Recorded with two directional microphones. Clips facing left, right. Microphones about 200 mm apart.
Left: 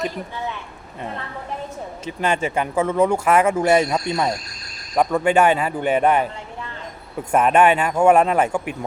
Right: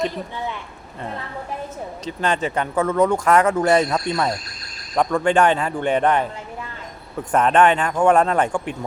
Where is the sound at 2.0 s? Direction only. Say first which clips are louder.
Even; 10° left (ahead or behind).